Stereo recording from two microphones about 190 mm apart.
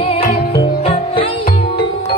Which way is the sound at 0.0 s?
30° left (ahead or behind).